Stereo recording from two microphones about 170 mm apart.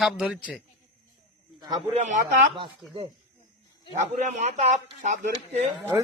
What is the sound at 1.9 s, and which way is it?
Speech, 45° right (ahead or behind).